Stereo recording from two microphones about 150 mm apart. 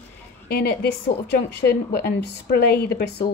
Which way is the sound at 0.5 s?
90° left.